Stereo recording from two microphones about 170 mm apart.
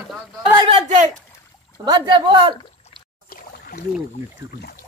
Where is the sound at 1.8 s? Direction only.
25° right (ahead or behind).